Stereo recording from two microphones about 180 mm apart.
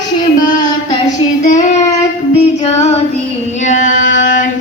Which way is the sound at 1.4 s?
45° left (ahead or behind).